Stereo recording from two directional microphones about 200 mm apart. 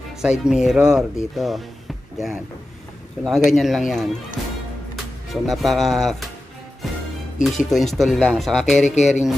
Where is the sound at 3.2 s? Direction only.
Centre (ahead or behind).